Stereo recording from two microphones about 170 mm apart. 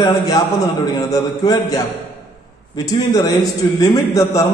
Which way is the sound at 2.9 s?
20° left (ahead or behind).